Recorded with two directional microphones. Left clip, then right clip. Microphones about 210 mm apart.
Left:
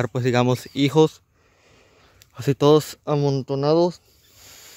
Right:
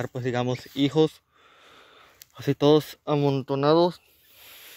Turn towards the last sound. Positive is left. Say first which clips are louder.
# left 2 dB
turn(degrees=20)  # may be behind; listen again after turning